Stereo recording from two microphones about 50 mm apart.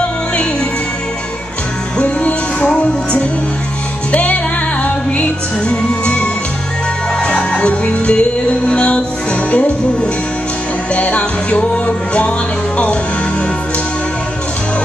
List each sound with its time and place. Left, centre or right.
2.0 s music: left
5.7 s music: left
7.2 s music: left
11.0 s music: left